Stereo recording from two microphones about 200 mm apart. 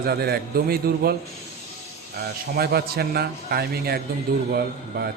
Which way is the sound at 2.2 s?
50° right (ahead or behind).